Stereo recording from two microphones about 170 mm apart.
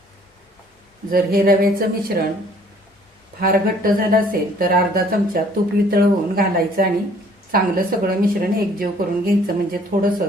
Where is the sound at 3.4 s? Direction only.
60° right (ahead or behind).